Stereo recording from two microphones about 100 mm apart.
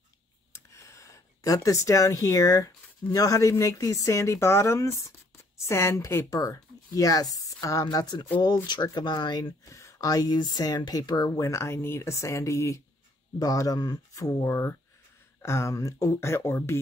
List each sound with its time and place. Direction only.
0.7 s speech: 30° left (ahead or behind)
9.7 s speech: 30° left (ahead or behind)